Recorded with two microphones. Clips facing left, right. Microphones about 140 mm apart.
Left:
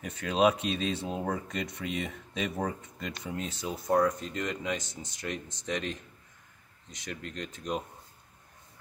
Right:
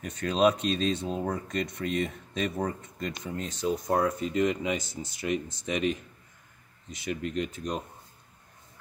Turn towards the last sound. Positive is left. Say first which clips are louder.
# right 8 dB
turn(degrees=-10)  # may be behind; listen again after turning